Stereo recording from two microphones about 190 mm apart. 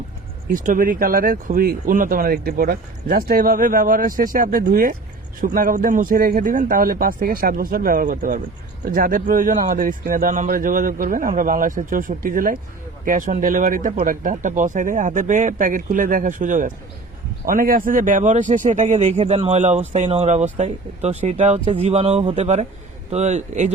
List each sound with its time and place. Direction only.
0.5 s speech: 45° right (ahead or behind)